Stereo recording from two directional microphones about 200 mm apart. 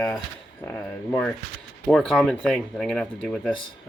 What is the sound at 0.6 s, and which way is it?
Speech, 10° left (ahead or behind).